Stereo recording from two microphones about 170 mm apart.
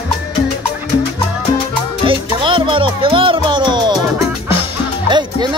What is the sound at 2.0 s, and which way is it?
Music, 30° right (ahead or behind).